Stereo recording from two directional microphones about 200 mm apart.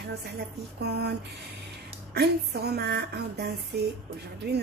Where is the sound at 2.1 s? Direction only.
55° right (ahead or behind).